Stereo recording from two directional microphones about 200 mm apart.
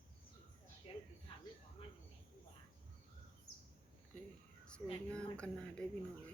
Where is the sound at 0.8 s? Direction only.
30° left (ahead or behind).